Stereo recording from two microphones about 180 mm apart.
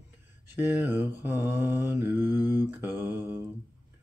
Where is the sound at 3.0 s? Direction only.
10° right (ahead or behind).